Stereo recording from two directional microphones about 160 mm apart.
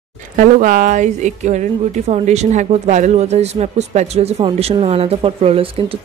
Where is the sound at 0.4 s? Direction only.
55° right (ahead or behind).